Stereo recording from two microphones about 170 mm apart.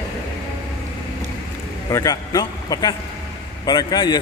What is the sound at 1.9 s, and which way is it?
A man's voice, 20° left (ahead or behind).